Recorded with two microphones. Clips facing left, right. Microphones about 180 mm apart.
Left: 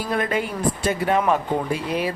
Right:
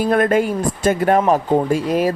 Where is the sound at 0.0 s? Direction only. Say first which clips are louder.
Right 8 dB; 55° right (ahead or behind).